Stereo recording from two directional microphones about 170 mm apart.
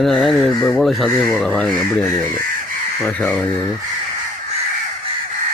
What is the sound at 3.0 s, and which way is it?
Speech, 10° left (ahead or behind).